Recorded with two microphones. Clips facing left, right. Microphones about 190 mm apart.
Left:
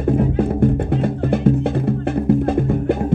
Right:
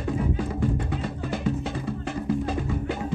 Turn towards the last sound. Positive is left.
turn(degrees=55)  # may be behind; listen again after turning